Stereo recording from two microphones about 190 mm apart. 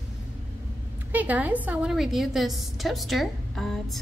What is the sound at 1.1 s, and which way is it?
A woman's voice, 10° right (ahead or behind).